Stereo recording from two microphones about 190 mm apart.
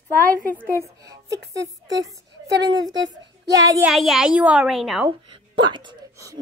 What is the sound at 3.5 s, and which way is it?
Speech, 15° right (ahead or behind).